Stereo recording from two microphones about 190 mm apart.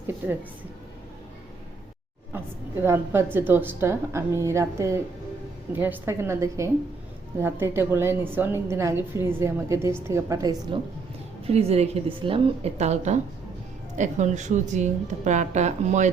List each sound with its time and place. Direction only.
0.2 s a woman's voice: 10° right (ahead or behind)
2.8 s a woman's voice: 15° right (ahead or behind)
11.4 s speech: 30° right (ahead or behind)